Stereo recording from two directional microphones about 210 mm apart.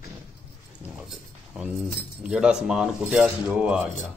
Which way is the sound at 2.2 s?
5° right (ahead or behind).